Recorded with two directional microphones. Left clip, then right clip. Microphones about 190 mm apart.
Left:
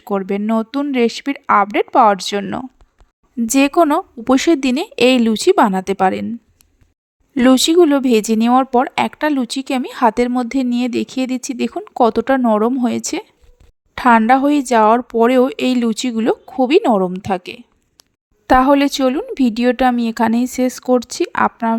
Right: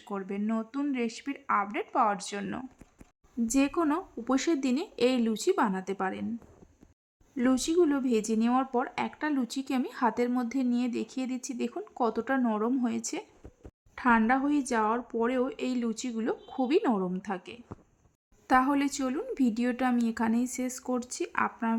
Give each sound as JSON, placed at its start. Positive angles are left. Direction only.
{"t": 0.0, "sound": "speech", "side_deg": 40}
{"t": 7.3, "sound": "speech", "side_deg": 45}